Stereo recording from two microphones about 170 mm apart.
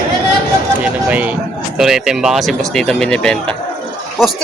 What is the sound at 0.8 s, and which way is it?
Speech, 10° right (ahead or behind).